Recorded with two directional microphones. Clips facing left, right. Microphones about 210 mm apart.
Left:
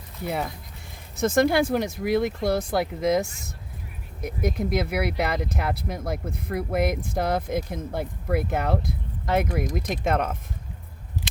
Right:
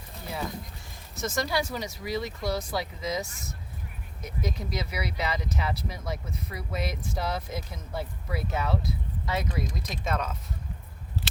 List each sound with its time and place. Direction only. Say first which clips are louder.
1.2 s speech: left 9 dB; 55° left (ahead or behind)